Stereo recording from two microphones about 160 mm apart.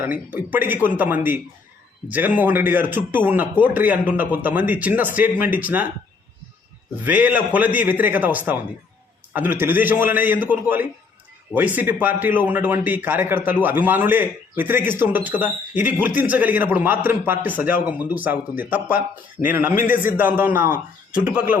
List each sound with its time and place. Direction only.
0.0 s speech: 10° right (ahead or behind)
7.0 s speech: 10° right (ahead or behind)